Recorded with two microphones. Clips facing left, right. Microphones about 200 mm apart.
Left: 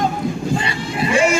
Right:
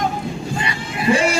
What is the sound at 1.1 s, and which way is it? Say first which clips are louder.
Vehicle: even; 35° right (ahead or behind).